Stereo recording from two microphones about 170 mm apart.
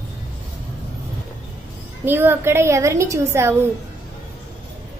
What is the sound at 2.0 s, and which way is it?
A woman's voice, 10° right (ahead or behind).